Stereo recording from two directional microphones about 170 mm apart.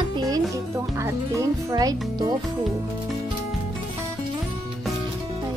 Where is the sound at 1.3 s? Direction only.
20° right (ahead or behind).